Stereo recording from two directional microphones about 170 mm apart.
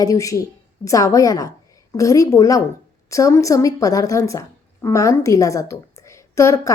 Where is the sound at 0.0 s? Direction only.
20° left (ahead or behind).